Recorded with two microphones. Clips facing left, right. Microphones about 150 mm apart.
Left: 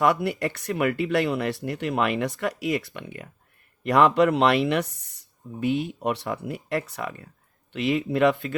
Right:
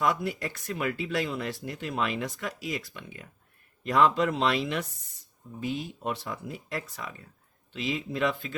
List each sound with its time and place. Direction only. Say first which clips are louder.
0.0 s speech: left 6 dB; 65° left (ahead or behind)